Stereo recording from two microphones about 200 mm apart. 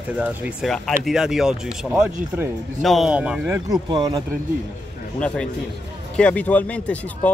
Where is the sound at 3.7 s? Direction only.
20° right (ahead or behind).